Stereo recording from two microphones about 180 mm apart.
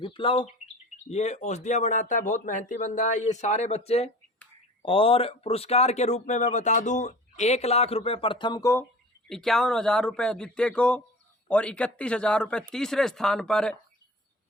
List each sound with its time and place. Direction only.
0.0 s speech: 30° left (ahead or behind)
1.1 s a man's voice: 40° left (ahead or behind); by 8.9 s 15° left (ahead or behind)
9.3 s speech: centre (ahead or behind)